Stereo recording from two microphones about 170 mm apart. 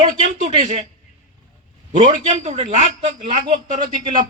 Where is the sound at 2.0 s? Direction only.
45° right (ahead or behind).